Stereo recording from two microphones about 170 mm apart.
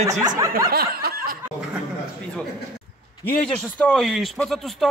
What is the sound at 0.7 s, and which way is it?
Snicker, 65° right (ahead or behind).